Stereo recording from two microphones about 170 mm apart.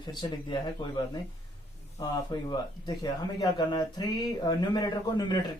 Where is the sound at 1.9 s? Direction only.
20° left (ahead or behind).